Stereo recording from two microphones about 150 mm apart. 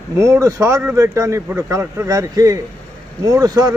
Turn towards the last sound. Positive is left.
turn(degrees=-25)  # may be behind; listen again after turning